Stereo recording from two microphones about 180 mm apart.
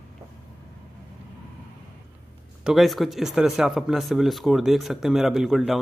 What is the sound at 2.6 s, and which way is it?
Speech, centre (ahead or behind).